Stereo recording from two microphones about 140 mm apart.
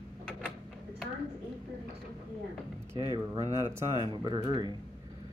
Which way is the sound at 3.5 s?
20° right (ahead or behind).